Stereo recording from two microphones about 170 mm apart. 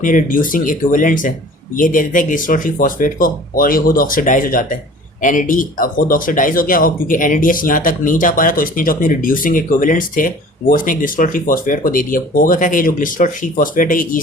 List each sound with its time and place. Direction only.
0.0 s speech: 50° left (ahead or behind)